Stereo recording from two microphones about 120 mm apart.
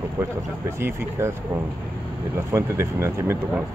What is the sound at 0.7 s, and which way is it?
Speech, 20° right (ahead or behind).